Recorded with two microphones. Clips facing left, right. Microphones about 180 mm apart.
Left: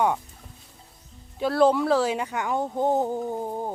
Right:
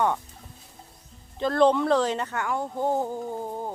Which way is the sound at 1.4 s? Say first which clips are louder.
Even; 5° left (ahead or behind).